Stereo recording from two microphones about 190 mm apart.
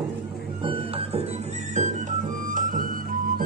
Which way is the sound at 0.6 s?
30° right (ahead or behind).